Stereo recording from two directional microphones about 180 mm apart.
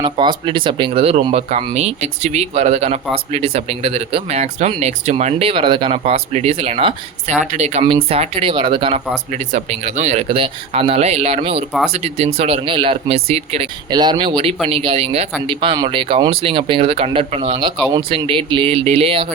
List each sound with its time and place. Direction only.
0.0 s speech: 25° right (ahead or behind)
9.3 s speech: 40° right (ahead or behind)
13.9 s speech: 25° right (ahead or behind)